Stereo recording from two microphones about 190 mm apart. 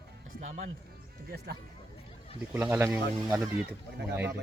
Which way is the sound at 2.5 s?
10° right (ahead or behind).